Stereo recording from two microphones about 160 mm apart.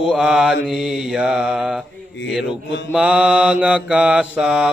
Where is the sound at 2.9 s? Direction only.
5° right (ahead or behind).